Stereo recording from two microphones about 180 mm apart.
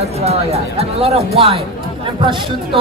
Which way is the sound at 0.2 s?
35° right (ahead or behind).